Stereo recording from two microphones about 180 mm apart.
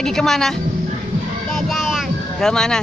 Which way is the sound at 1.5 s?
Centre (ahead or behind).